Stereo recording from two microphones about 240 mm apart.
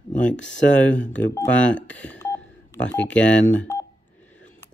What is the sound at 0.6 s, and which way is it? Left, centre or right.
Speech, centre.